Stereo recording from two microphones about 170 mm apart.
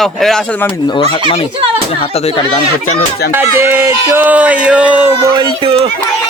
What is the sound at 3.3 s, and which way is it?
Speech, 15° right (ahead or behind).